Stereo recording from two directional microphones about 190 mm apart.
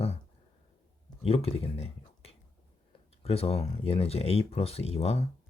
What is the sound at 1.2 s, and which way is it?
Speech, 30° left (ahead or behind).